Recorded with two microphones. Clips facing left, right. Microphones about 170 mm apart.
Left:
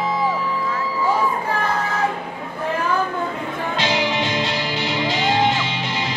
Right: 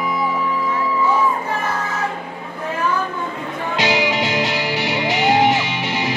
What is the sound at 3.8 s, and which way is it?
Music, 15° right (ahead or behind).